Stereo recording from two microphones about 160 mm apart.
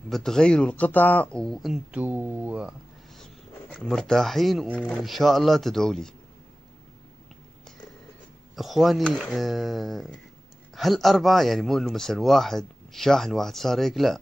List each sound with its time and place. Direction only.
0.1 s a man's voice: 5° left (ahead or behind)
3.7 s a man's voice: 5° left (ahead or behind)
8.5 s a man's voice: centre (ahead or behind)